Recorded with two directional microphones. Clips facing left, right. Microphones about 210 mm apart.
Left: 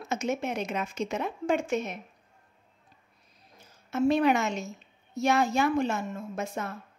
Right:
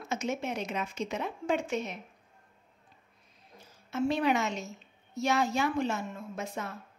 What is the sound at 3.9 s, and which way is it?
A woman's voice, 50° left (ahead or behind).